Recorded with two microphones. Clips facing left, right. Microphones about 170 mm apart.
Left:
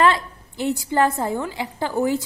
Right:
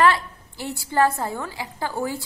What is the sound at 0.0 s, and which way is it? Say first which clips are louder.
A woman's voice: left 1 dB; 20° left (ahead or behind).